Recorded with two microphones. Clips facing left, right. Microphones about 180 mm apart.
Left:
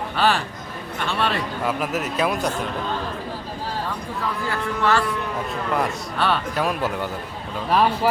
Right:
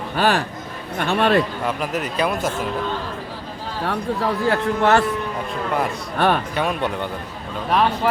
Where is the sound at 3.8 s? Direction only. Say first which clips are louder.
Right 6 dB; 65° right (ahead or behind).